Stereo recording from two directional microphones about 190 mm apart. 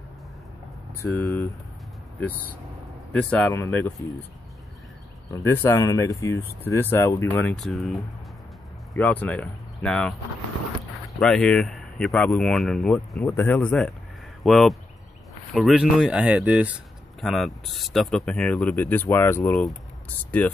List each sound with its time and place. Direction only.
1.0 s speech: 15° left (ahead or behind)
3.1 s speech: 5° left (ahead or behind)
3.5 s speech: 15° left (ahead or behind)
5.3 s speech: 15° left (ahead or behind)
8.9 s speech: 5° left (ahead or behind)
11.1 s speech: centre (ahead or behind)